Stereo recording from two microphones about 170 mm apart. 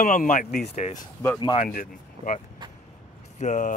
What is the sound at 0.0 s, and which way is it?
Speech, 50° left (ahead or behind).